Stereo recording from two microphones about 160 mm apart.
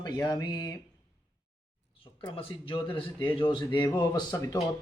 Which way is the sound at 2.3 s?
35° left (ahead or behind).